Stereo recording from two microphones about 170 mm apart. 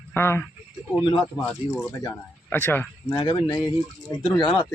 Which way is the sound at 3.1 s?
25° left (ahead or behind).